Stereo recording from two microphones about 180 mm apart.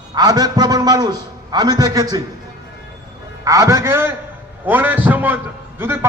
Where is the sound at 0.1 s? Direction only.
20° right (ahead or behind).